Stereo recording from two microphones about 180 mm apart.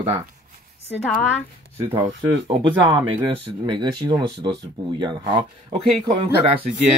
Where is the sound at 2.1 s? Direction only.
90° right.